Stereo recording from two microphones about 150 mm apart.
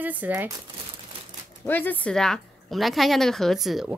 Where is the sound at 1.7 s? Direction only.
10° left (ahead or behind).